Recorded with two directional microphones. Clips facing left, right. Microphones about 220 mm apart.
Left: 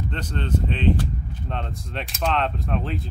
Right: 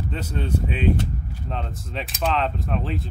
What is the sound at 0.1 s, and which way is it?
Speech, 5° right (ahead or behind).